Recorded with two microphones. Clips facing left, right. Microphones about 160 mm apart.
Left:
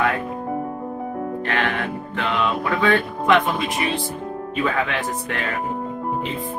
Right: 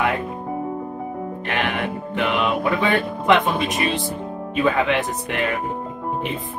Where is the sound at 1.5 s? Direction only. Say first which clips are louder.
Right 2 dB; 15° right (ahead or behind).